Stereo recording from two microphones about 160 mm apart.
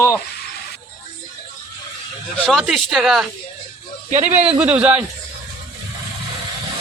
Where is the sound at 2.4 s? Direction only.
Centre (ahead or behind).